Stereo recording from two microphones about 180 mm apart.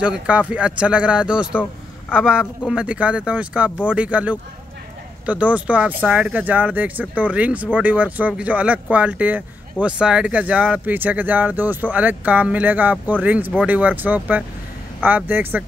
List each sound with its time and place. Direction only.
0.0 s speech: 5° right (ahead or behind)